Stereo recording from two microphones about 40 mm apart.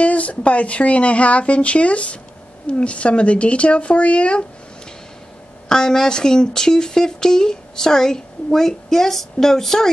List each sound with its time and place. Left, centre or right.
0.0 s speech: left
5.7 s speech: centre